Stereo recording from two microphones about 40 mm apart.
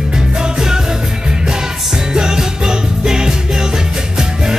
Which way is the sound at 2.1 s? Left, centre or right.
Centre.